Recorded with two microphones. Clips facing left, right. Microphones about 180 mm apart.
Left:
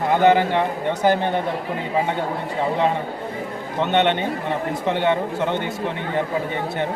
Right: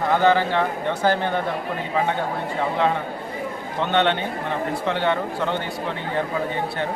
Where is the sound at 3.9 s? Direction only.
20° left (ahead or behind).